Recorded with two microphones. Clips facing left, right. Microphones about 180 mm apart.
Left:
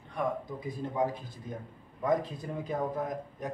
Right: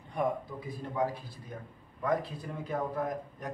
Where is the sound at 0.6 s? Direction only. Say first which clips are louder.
Left 2 dB; 20° left (ahead or behind).